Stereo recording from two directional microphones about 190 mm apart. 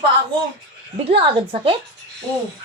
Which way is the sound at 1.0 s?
25° right (ahead or behind).